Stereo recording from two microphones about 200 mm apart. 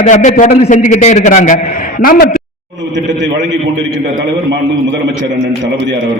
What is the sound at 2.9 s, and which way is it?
Speech, 60° right (ahead or behind).